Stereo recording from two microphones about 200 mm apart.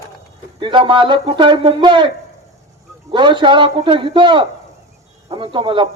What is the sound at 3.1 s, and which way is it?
Speech, 25° right (ahead or behind).